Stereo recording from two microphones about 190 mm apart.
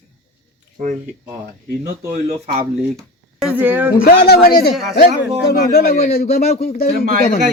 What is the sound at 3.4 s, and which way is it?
Speech, 5° right (ahead or behind).